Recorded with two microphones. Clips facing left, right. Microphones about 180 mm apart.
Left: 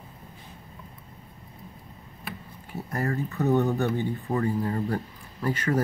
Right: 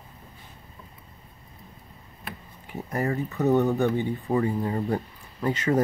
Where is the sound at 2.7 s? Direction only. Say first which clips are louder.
Right 2 dB; 15° right (ahead or behind).